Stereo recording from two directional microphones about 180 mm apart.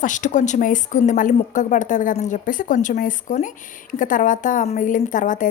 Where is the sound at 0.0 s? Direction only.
45° left (ahead or behind).